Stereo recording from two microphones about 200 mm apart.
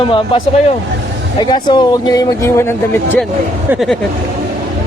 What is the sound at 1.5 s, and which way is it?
Speech, 20° left (ahead or behind).